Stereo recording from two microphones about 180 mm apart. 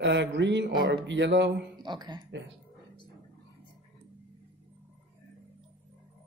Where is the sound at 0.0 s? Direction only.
70° right (ahead or behind).